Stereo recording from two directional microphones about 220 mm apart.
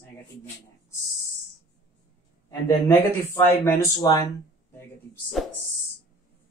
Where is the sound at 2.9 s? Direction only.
10° left (ahead or behind).